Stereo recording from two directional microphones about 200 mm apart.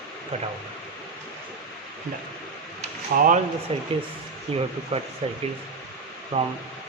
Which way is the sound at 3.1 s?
45° right (ahead or behind).